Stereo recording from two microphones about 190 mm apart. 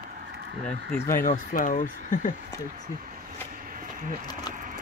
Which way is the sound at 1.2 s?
45° left (ahead or behind).